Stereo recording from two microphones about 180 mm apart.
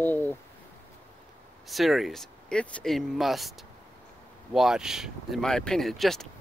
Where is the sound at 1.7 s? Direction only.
Centre (ahead or behind).